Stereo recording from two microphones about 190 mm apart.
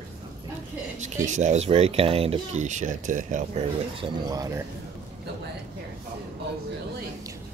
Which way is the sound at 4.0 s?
20° right (ahead or behind).